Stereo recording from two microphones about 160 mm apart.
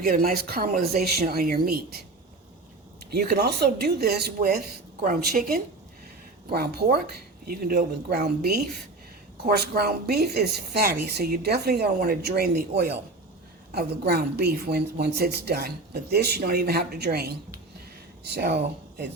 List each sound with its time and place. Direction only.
0.0 s speech: 65° right (ahead or behind)
3.1 s a woman's voice: 85° right; by 5.6 s 65° right (ahead or behind)
6.5 s speech: 75° right (ahead or behind)